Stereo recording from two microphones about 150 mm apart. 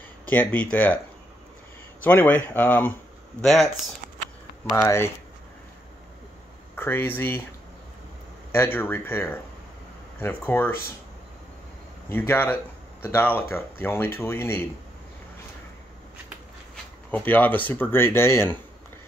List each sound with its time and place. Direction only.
0.3 s speech: 10° left (ahead or behind)
2.0 s speech: 10° left (ahead or behind)
4.6 s speech: 20° left (ahead or behind)
6.7 s speech: 15° left (ahead or behind)
8.5 s speech: 15° left (ahead or behind)
12.1 s speech: 15° left (ahead or behind)
17.1 s speech: 10° left (ahead or behind)